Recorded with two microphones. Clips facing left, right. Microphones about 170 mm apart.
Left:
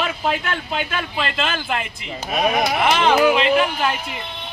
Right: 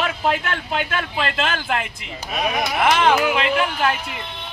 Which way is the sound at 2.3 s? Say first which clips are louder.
Left 4 dB; 35° left (ahead or behind).